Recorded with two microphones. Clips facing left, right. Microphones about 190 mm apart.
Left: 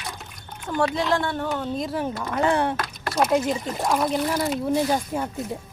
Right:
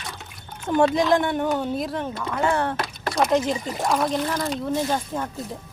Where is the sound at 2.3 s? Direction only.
15° left (ahead or behind).